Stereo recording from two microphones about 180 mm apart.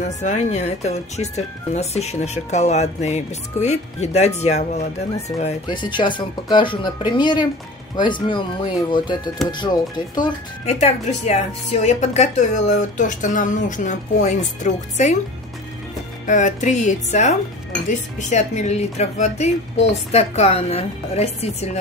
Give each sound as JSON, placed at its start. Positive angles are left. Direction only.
{"t": 0.2, "sound": "speech", "side_deg": 40}
{"t": 5.7, "sound": "speech", "side_deg": 25}
{"t": 9.5, "sound": "speech", "side_deg": 25}
{"t": 10.6, "sound": "speech", "side_deg": 35}
{"t": 16.3, "sound": "speech", "side_deg": 45}